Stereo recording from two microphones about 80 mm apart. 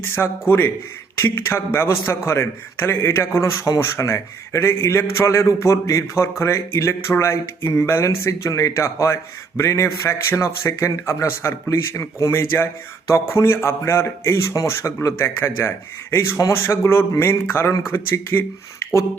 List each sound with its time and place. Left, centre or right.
0.1 s a man's voice: left